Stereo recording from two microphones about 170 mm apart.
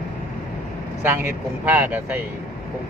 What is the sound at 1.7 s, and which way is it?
Speech, 10° right (ahead or behind).